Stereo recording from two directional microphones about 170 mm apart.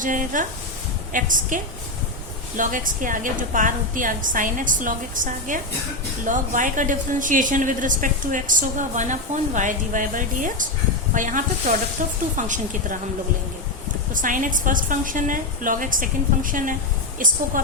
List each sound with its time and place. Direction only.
0.0 s speech: 50° right (ahead or behind)
14.1 s speech: 50° right (ahead or behind)